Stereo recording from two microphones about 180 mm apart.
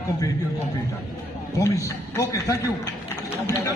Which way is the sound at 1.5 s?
15° left (ahead or behind).